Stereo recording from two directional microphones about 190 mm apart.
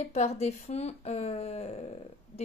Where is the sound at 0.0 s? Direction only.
35° left (ahead or behind).